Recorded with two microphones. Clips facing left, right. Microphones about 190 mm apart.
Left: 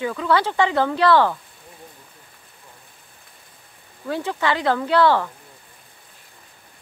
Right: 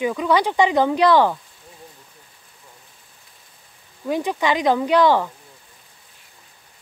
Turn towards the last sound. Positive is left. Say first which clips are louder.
# right 1 dB
turn(degrees=-15)  # may be behind; listen again after turning